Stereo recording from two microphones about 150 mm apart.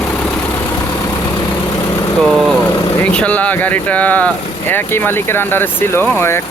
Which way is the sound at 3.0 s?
10° left (ahead or behind).